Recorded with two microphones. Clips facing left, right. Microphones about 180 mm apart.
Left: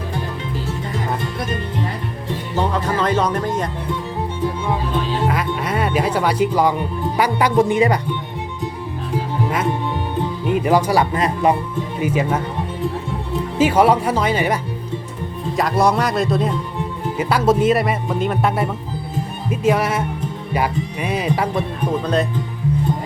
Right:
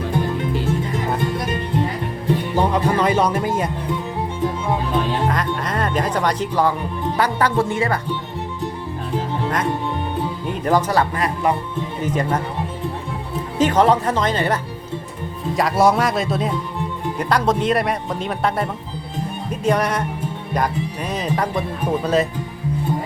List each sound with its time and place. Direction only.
2.6 s music: 10° right (ahead or behind)
5.3 s speech: 5° left (ahead or behind)
10.5 s speech: 10° left (ahead or behind)
11.1 s speech: 20° left (ahead or behind)
12.0 s speech: 5° left (ahead or behind)
13.6 s speech: 10° left (ahead or behind)
15.5 s speech: centre (ahead or behind)
21.8 s speech: 10° right (ahead or behind)